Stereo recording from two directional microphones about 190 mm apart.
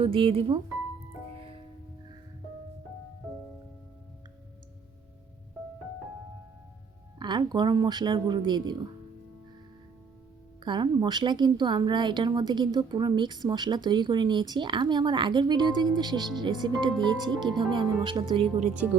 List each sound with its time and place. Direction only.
0.0 s a woman's voice: 30° right (ahead or behind)
7.2 s a woman's voice: 25° right (ahead or behind)
10.6 s a woman's voice: 25° right (ahead or behind)